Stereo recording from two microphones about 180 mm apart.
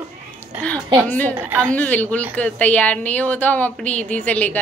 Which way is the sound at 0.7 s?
25° right (ahead or behind).